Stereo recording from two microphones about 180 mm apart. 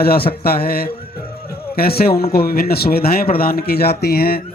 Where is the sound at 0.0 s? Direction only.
55° left (ahead or behind).